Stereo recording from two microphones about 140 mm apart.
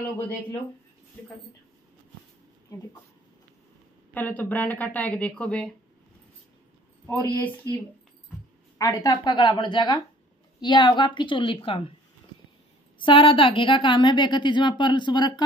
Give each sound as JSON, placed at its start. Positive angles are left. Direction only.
{"t": 4.1, "sound": "speech", "side_deg": 10}
{"t": 7.1, "sound": "a woman's voice", "side_deg": 15}
{"t": 13.0, "sound": "a woman's voice", "side_deg": 40}